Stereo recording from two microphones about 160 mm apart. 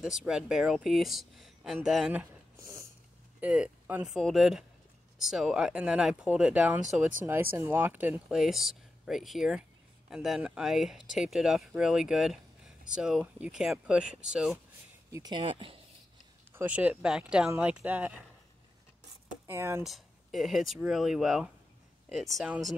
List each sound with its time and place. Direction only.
0.0 s speech: 5° right (ahead or behind)
2.5 s snort: 15° right (ahead or behind)
3.3 s speech: 5° right (ahead or behind)
15.0 s speech: 20° right (ahead or behind)
16.5 s speech: 10° right (ahead or behind)
19.4 s speech: 15° right (ahead or behind)
19.8 s speech: centre (ahead or behind)